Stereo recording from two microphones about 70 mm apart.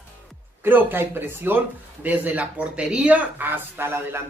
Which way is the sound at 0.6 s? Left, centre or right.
Right.